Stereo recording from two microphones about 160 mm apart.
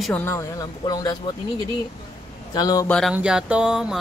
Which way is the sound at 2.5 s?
25° left (ahead or behind).